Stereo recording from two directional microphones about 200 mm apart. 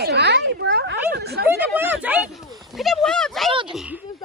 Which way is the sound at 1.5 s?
10° right (ahead or behind).